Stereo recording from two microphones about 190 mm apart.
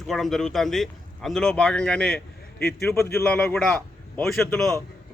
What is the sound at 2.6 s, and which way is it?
Speech, 55° left (ahead or behind).